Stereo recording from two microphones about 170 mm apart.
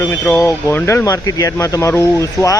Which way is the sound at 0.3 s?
15° left (ahead or behind).